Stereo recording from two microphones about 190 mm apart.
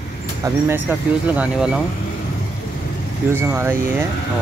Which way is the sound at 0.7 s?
10° right (ahead or behind).